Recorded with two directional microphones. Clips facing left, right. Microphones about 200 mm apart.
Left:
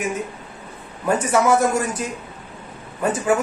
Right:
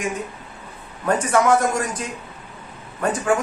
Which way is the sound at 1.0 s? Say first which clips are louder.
Even; 10° left (ahead or behind).